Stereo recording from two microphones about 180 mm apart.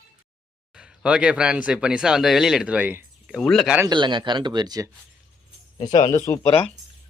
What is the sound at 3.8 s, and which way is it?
Speech, 25° right (ahead or behind).